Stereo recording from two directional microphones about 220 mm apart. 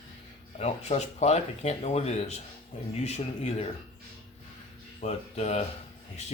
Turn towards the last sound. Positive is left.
turn(degrees=30)  # may be behind; listen again after turning